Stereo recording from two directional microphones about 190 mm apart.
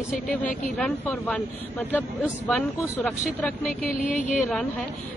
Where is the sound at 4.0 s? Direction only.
45° left (ahead or behind).